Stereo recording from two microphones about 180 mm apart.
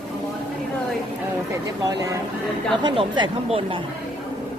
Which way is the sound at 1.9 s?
20° right (ahead or behind).